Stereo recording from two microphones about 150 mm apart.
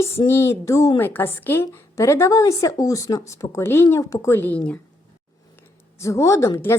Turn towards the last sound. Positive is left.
turn(degrees=20)  # may be behind; listen again after turning